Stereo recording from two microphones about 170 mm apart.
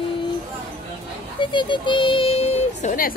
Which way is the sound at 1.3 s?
30° left (ahead or behind).